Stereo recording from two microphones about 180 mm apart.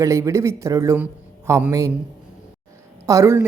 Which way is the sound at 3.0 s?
15° right (ahead or behind).